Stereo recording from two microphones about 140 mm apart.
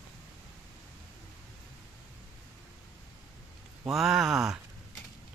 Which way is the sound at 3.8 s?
5° right (ahead or behind).